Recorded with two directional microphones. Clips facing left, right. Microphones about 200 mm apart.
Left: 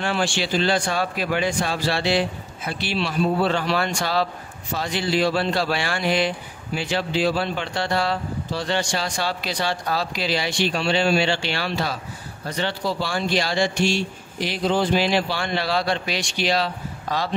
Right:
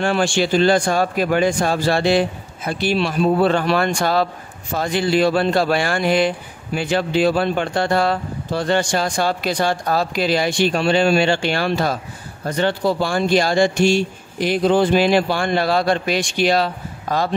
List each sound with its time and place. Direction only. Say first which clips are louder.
0.0 s speech: right 6 dB; 50° right (ahead or behind)